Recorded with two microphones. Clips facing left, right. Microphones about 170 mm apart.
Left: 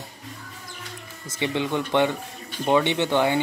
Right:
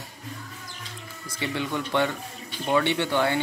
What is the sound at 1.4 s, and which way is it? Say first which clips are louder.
Speech: left 4 dB; 20° left (ahead or behind).